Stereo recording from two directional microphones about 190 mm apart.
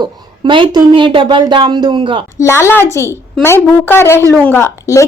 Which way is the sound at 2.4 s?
15° left (ahead or behind).